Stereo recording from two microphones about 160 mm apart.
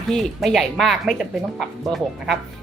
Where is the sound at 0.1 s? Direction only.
Centre (ahead or behind).